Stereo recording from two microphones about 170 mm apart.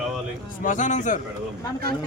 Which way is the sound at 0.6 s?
50° left (ahead or behind).